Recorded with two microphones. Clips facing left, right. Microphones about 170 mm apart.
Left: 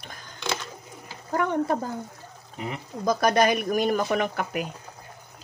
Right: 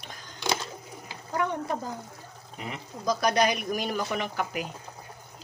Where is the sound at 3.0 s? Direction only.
50° left (ahead or behind).